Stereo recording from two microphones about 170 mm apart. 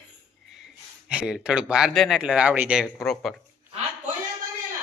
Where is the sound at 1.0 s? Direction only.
5° right (ahead or behind).